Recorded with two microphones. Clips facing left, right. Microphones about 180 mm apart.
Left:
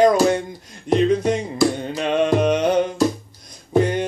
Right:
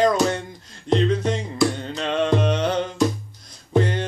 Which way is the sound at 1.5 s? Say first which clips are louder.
Left 2 dB; 15° left (ahead or behind).